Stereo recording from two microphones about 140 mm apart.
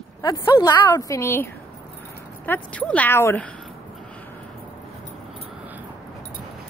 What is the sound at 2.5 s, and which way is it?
Speech, 10° left (ahead or behind).